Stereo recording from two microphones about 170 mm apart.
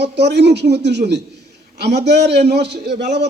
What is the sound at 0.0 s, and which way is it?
A man's voice, 80° right.